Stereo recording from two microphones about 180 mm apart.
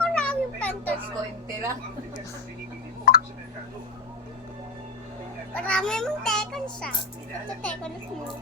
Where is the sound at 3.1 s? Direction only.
55° left (ahead or behind).